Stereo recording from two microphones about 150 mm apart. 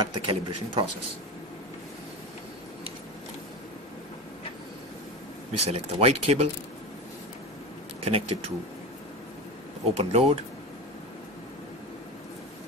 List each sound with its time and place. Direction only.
0.0 s speech: 35° right (ahead or behind)
5.7 s speech: 40° right (ahead or behind)
8.0 s speech: 40° right (ahead or behind)
9.9 s speech: 45° right (ahead or behind)